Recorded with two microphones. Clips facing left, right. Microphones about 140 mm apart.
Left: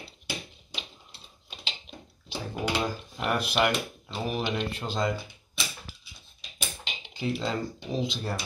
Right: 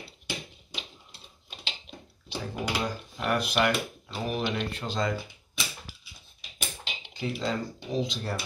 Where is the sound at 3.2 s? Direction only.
10° left (ahead or behind).